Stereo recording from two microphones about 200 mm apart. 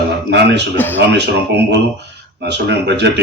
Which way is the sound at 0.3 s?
60° right (ahead or behind).